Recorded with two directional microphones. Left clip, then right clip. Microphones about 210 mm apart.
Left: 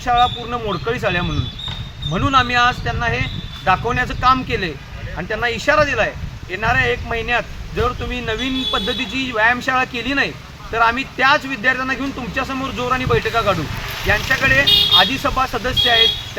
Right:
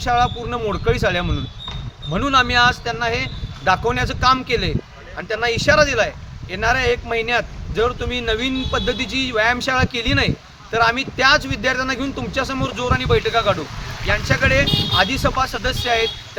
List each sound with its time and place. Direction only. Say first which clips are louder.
0.0 s speech: left 2 dB; 20° right (ahead or behind)